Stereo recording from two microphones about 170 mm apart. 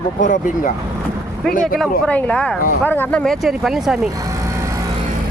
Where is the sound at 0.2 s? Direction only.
50° left (ahead or behind).